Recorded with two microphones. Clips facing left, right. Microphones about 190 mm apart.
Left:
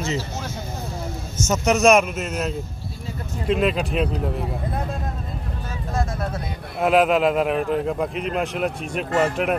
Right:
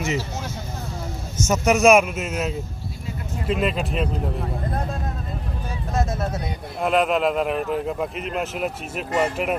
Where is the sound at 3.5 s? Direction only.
Centre (ahead or behind).